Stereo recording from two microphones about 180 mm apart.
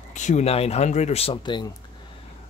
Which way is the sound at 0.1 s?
40° left (ahead or behind).